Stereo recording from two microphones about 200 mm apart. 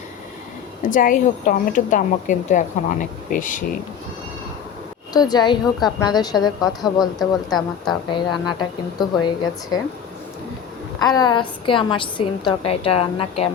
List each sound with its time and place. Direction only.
0.9 s a woman's voice: 40° left (ahead or behind)
5.1 s a woman's voice: 20° left (ahead or behind)
7.2 s a woman's voice: centre (ahead or behind)
8.1 s a woman's voice: 20° left (ahead or behind)
11.0 s a woman's voice: 20° left (ahead or behind)